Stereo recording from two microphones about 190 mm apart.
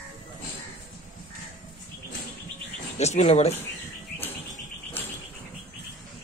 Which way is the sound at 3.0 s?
35° left (ahead or behind).